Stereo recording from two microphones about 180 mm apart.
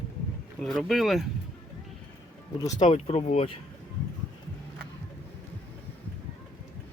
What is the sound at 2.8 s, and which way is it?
Speech, 35° left (ahead or behind).